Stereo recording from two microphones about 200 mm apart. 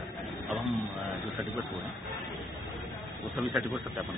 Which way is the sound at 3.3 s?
Centre (ahead or behind).